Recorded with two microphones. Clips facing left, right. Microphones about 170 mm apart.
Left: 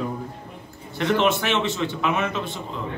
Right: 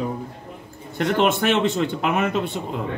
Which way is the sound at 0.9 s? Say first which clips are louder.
Right 1 dB; 50° right (ahead or behind).